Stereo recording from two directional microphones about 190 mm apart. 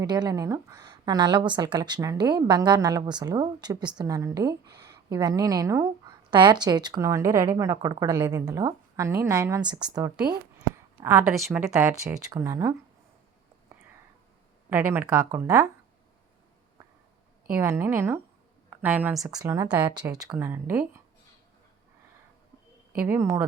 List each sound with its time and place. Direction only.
0.0 s a woman's voice: 20° right (ahead or behind)
11.0 s speech: 10° right (ahead or behind)
14.7 s speech: 10° right (ahead or behind)
17.5 s speech: 15° right (ahead or behind)
19.9 s a woman's voice: 20° right (ahead or behind)
23.0 s speech: 10° right (ahead or behind)